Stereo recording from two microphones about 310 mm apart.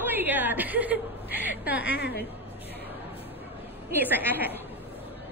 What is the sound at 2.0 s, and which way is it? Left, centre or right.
Speech, left.